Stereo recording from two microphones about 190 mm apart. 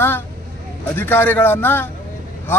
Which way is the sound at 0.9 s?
10° left (ahead or behind).